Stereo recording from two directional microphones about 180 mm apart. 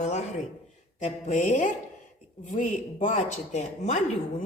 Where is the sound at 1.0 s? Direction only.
45° left (ahead or behind).